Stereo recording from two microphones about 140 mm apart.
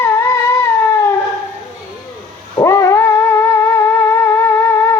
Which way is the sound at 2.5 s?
20° left (ahead or behind).